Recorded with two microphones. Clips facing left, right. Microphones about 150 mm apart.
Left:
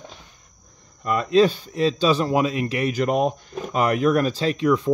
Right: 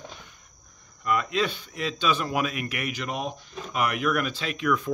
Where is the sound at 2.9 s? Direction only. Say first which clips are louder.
Left 11 dB; 45° left (ahead or behind).